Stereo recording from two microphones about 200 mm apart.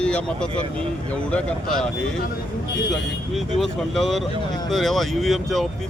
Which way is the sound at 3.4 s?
Centre (ahead or behind).